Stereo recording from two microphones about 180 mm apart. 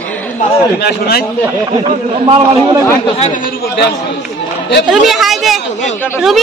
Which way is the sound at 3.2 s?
45° left (ahead or behind).